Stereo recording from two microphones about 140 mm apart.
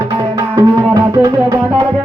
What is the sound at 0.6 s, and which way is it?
Music, 25° right (ahead or behind).